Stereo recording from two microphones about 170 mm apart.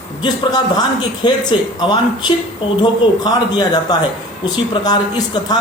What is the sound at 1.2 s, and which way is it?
Speech, 25° left (ahead or behind).